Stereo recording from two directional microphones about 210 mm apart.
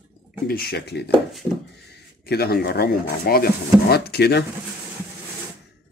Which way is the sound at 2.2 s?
50° left (ahead or behind).